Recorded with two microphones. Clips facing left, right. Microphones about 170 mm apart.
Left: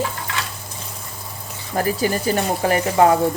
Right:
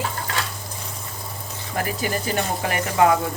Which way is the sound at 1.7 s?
35° left (ahead or behind).